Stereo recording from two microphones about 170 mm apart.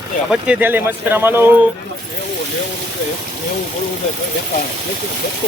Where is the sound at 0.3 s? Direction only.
5° right (ahead or behind).